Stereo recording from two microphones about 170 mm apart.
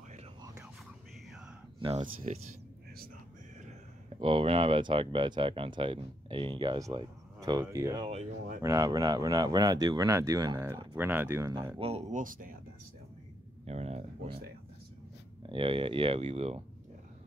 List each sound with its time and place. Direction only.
1.8 s speech: 30° right (ahead or behind)
2.3 s speech: 45° right (ahead or behind)
4.1 s speech: 35° right (ahead or behind)
8.1 s speech: 40° right (ahead or behind)
8.6 s speech: 20° right (ahead or behind)
11.8 s speech: 35° right (ahead or behind)
12.2 s speech: 55° right (ahead or behind)
13.7 s speech: 40° right (ahead or behind)
15.4 s speech: 30° right (ahead or behind)